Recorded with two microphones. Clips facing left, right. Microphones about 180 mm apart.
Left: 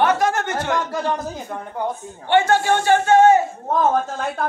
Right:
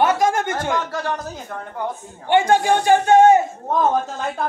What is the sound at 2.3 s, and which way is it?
A man's voice, 15° right (ahead or behind).